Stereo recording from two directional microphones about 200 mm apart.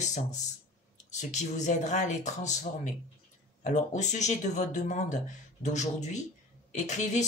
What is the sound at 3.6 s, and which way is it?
Speech, 35° left (ahead or behind).